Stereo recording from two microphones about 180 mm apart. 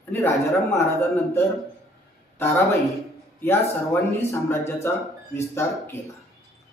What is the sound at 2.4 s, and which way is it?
A man's voice, 15° left (ahead or behind).